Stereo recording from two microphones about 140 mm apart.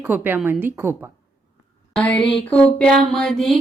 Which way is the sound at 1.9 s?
5° left (ahead or behind).